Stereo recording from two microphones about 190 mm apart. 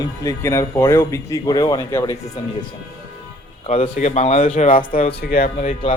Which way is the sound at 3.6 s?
30° left (ahead or behind).